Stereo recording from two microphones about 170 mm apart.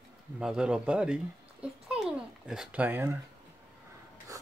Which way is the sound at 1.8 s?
5° right (ahead or behind).